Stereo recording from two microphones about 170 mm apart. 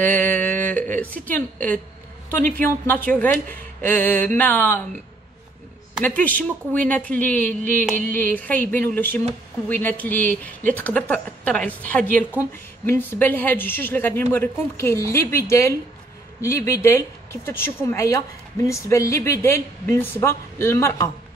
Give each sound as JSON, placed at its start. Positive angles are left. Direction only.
{"t": 0.0, "sound": "a woman's voice", "side_deg": 10}
{"t": 6.0, "sound": "speech", "side_deg": 10}